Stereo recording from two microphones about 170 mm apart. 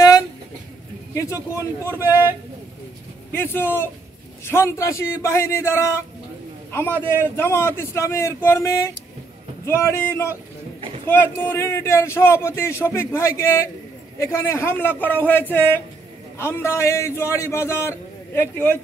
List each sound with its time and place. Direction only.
1.1 s speech: 15° left (ahead or behind)
3.3 s a man's voice: 15° left (ahead or behind)